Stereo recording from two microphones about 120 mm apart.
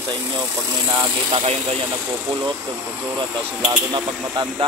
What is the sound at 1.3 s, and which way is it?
Speech, 55° right (ahead or behind).